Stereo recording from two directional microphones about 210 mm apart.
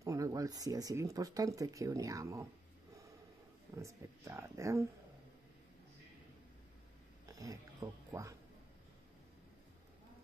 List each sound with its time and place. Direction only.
0.0 s speech: 15° right (ahead or behind)
3.7 s speech: 15° right (ahead or behind)
7.2 s speech: 15° right (ahead or behind)